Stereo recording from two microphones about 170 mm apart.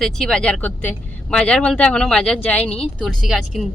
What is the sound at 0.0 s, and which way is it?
Speech, 5° left (ahead or behind).